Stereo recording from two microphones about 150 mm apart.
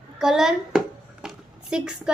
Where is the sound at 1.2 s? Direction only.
5° right (ahead or behind).